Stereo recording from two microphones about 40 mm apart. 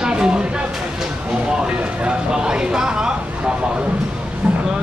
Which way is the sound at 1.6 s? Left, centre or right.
Right.